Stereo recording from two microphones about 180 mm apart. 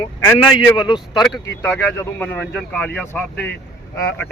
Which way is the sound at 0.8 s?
25° left (ahead or behind).